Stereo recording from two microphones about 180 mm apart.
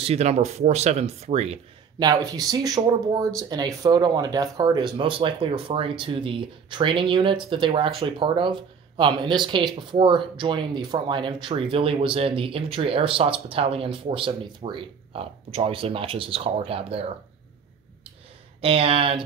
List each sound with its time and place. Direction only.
0.0 s speech: 35° right (ahead or behind)
2.0 s speech: 20° right (ahead or behind)
18.6 s speech: 30° right (ahead or behind)